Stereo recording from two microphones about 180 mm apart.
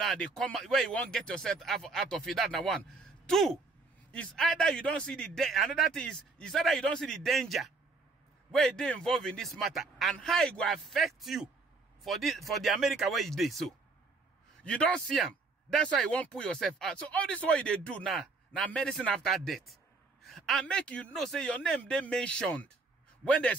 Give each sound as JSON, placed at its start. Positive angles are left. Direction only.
{"t": 0.0, "sound": "a man's voice", "side_deg": 5}